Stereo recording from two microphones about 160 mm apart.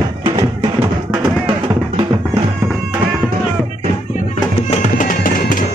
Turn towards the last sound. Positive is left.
turn(degrees=55)  # may be behind; listen again after turning